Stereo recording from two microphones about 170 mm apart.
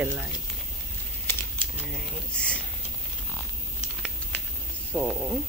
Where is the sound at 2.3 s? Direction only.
5° left (ahead or behind).